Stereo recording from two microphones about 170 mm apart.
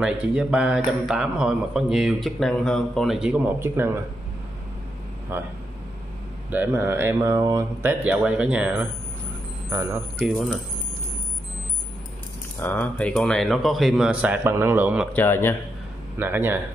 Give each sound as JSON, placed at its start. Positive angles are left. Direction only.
{"t": 0.0, "sound": "speech", "side_deg": -5}
{"t": 5.3, "sound": "speech", "side_deg": -10}
{"t": 6.5, "sound": "speech", "side_deg": -15}
{"t": 9.7, "sound": "speech", "side_deg": -20}
{"t": 12.5, "sound": "speech", "side_deg": 10}
{"t": 15.1, "sound": "speech", "side_deg": 15}
{"t": 16.2, "sound": "speech", "side_deg": -10}